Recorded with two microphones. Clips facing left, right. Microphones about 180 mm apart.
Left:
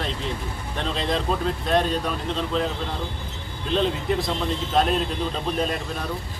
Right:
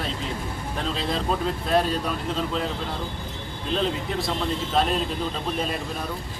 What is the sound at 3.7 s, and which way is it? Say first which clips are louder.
Speech: left 3 dB; centre (ahead or behind).